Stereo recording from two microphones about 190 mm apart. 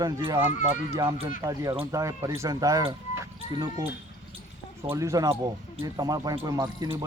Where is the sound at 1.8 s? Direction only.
15° right (ahead or behind).